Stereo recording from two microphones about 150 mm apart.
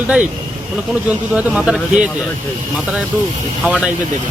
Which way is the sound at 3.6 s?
5° right (ahead or behind).